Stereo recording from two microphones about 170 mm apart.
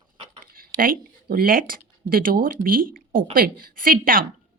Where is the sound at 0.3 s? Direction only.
55° right (ahead or behind).